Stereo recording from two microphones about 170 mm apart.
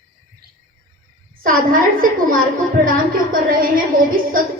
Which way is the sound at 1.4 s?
55° right (ahead or behind).